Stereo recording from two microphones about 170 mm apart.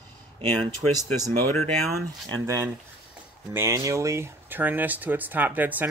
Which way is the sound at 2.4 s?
15° right (ahead or behind).